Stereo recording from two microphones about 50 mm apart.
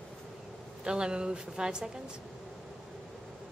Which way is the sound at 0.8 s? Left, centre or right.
Centre.